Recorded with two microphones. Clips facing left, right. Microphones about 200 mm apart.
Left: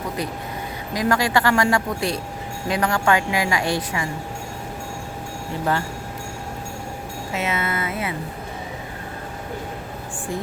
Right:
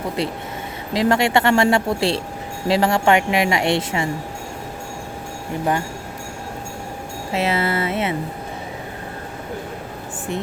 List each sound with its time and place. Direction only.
0.2 s a woman's voice: 25° right (ahead or behind)
7.3 s a woman's voice: 30° right (ahead or behind)